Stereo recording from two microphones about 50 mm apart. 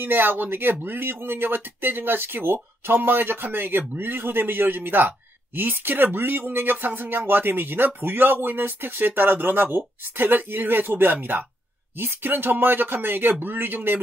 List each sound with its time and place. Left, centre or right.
0.0 s speech: right